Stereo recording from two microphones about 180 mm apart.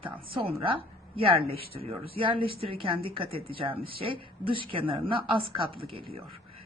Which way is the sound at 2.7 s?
30° right (ahead or behind).